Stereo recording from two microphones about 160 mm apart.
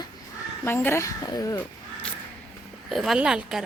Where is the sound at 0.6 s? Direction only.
15° left (ahead or behind).